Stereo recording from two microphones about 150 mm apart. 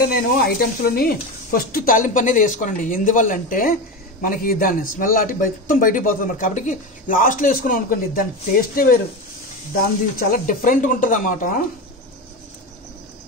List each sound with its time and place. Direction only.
0.1 s a man's voice: 80° left; by 11.6 s 60° left (ahead or behind)